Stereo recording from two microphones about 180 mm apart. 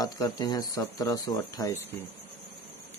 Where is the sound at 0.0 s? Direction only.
20° left (ahead or behind).